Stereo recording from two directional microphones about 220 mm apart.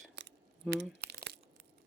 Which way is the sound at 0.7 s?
50° right (ahead or behind).